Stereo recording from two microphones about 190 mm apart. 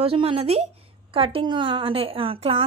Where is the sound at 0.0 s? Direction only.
30° right (ahead or behind).